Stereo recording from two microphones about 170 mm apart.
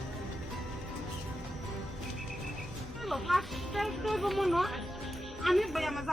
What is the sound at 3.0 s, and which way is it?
Speech, centre (ahead or behind).